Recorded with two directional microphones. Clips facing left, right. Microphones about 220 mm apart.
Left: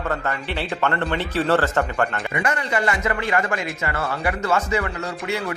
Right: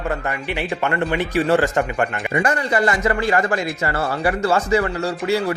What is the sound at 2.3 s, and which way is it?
A man's voice, 35° right (ahead or behind).